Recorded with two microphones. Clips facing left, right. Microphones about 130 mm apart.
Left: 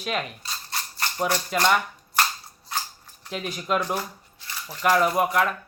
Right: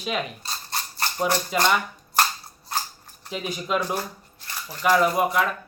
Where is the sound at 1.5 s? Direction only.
Centre (ahead or behind).